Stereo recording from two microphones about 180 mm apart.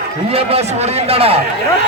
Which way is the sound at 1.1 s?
35° right (ahead or behind).